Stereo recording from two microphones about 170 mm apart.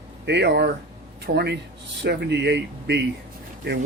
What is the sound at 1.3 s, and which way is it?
Speech, 75° right (ahead or behind).